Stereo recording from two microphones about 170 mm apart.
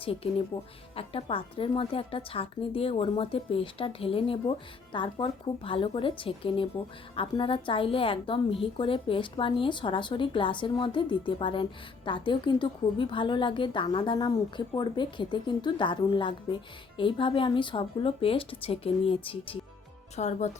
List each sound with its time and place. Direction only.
0.0 s a woman's voice: 35° left (ahead or behind)
20.1 s speech: 40° left (ahead or behind)